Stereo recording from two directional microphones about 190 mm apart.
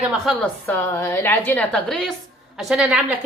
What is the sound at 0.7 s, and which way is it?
A woman's voice, 10° left (ahead or behind).